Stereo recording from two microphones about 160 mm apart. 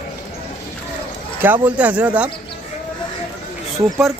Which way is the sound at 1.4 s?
10° right (ahead or behind).